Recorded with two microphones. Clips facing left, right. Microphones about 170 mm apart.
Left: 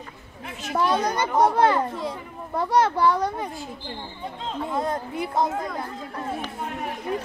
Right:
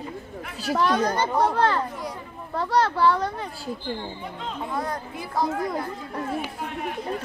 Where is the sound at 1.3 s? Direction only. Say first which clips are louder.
Left 6 dB; 15° left (ahead or behind).